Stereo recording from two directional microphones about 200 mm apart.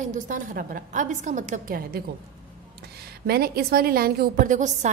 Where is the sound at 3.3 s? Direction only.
50° right (ahead or behind).